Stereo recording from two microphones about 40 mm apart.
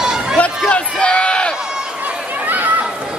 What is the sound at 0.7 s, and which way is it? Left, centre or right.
Crowd, left.